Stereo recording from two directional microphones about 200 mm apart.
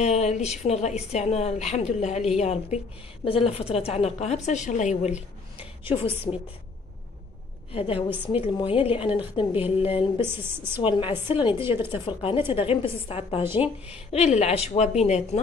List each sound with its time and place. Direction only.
0.0 s a woman's voice: 35° left (ahead or behind)
6.3 s a woman's voice: 20° left (ahead or behind)
7.7 s a woman's voice: 30° left (ahead or behind)
10.2 s a woman's voice: 10° right (ahead or behind)
10.8 s a woman's voice: 25° left (ahead or behind)